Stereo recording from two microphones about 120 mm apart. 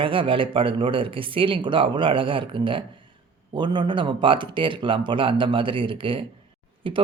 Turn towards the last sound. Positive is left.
turn(degrees=-45)  # may be behind; listen again after turning